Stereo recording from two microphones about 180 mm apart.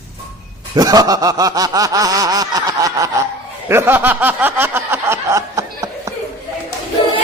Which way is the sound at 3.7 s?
15° right (ahead or behind).